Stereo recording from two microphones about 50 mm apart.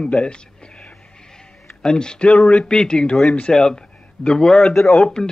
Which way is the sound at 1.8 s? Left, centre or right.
Centre.